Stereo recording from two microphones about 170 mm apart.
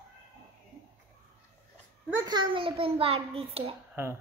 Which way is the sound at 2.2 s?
25° right (ahead or behind).